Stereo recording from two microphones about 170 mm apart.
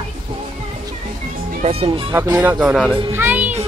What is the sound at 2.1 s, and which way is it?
Speech, 15° right (ahead or behind).